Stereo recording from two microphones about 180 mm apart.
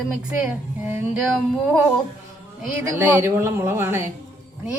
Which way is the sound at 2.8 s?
10° right (ahead or behind).